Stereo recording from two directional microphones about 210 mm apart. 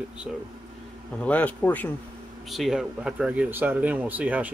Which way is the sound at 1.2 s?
5° left (ahead or behind).